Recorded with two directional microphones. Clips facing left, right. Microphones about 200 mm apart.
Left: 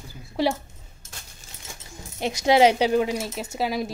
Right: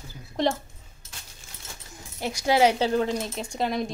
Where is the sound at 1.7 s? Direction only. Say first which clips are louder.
Left 3 dB; 20° left (ahead or behind); by 3.9 s 5° left (ahead or behind).